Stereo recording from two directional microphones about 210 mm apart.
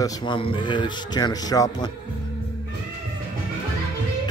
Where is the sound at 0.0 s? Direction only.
20° left (ahead or behind).